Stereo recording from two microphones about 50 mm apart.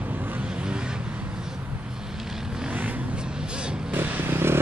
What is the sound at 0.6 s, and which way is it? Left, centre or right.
Vehicle, centre.